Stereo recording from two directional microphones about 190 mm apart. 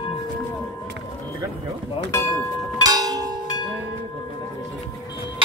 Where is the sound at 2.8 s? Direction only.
20° right (ahead or behind).